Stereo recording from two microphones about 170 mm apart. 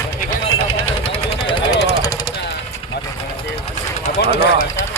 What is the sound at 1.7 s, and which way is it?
Jackhammer, 90° left.